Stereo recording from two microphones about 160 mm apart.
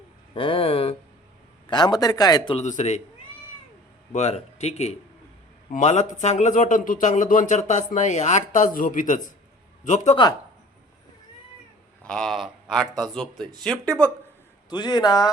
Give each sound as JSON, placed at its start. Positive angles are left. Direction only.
{"t": 0.3, "sound": "a man's voice", "side_deg": 35}
{"t": 2.6, "sound": "speech", "side_deg": 45}
{"t": 4.1, "sound": "speech", "side_deg": 40}
{"t": 12.0, "sound": "speech", "side_deg": 5}
{"t": 14.7, "sound": "a man's voice", "side_deg": 25}